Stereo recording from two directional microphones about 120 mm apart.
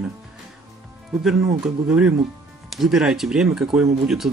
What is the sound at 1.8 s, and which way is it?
Speech, 10° right (ahead or behind).